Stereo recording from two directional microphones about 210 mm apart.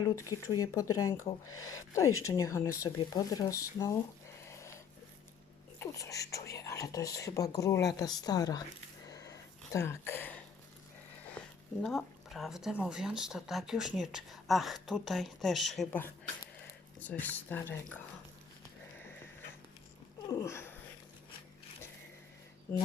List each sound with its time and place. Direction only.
0.4 s speech: 15° left (ahead or behind)
4.4 s a sound: 15° left (ahead or behind)
5.8 s speech: 15° left (ahead or behind)
9.0 s a sound: 15° left (ahead or behind)
11.3 s speech: centre (ahead or behind)
20.2 s cat: 15° left (ahead or behind)